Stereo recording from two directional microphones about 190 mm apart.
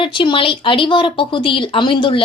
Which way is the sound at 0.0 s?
25° left (ahead or behind).